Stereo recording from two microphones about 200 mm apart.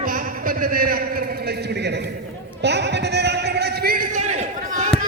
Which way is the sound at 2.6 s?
60° right (ahead or behind).